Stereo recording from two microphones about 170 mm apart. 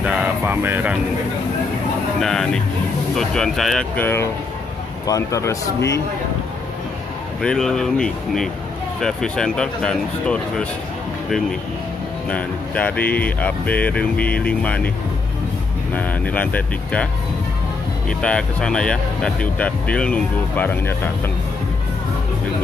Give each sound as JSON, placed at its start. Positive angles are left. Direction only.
{"t": 0.0, "sound": "a sound", "side_deg": -10}
{"t": 2.1, "sound": "speech", "side_deg": 0}
{"t": 7.4, "sound": "speech", "side_deg": 5}
{"t": 12.3, "sound": "speech", "side_deg": 10}
{"t": 15.9, "sound": "speech", "side_deg": 10}
{"t": 18.2, "sound": "speech", "side_deg": 5}